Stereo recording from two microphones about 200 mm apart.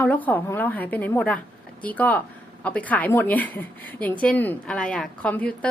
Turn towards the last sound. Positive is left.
turn(degrees=5)  # may be behind; listen again after turning